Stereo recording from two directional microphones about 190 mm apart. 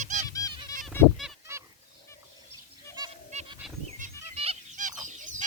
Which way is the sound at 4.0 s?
30° right (ahead or behind).